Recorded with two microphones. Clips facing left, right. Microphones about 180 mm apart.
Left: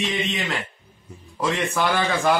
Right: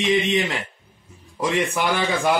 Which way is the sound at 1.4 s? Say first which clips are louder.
Right 1 dB; 15° right (ahead or behind).